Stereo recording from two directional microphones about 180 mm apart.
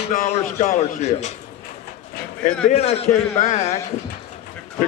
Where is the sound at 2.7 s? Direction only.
35° left (ahead or behind).